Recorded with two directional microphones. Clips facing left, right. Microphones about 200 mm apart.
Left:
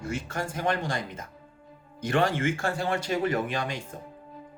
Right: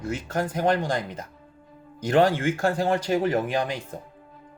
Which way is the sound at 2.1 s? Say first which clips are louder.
Right 5 dB; 40° right (ahead or behind).